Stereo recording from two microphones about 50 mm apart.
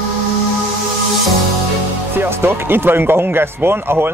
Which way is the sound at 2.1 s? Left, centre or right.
Right.